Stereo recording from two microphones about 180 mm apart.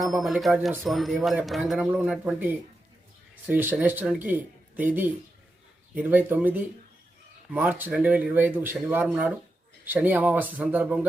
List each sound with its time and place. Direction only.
0.0 s speech: centre (ahead or behind)